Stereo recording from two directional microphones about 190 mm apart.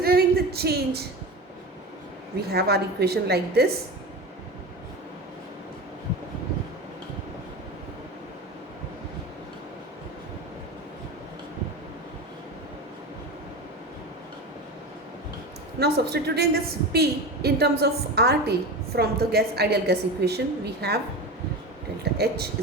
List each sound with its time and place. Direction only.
0.0 s a sound: 55° right (ahead or behind)
2.5 s a woman's voice: 55° right (ahead or behind)
15.8 s a woman's voice: 60° right (ahead or behind)
22.0 s speech: 55° right (ahead or behind)